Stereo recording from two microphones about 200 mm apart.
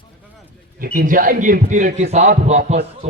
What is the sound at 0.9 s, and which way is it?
Speech, 45° right (ahead or behind).